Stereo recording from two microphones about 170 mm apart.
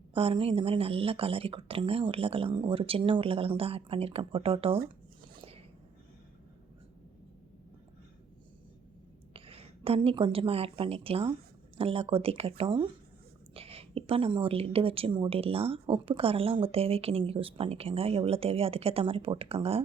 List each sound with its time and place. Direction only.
0.1 s a woman's voice: 35° right (ahead or behind)
9.3 s a woman's voice: 35° right (ahead or behind)